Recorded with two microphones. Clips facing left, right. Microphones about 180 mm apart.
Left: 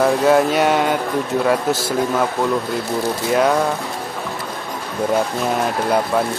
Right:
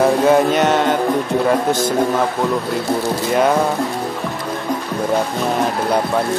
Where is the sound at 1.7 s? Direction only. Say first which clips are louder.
Right 3 dB; 5° left (ahead or behind).